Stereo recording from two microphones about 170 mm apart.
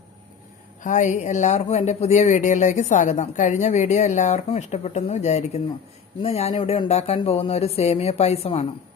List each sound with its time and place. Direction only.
0.8 s speech: 45° left (ahead or behind)